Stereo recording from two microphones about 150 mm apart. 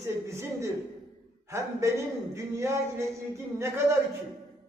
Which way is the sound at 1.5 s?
20° right (ahead or behind).